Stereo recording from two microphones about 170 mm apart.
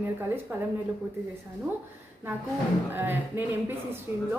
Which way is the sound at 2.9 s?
10° right (ahead or behind).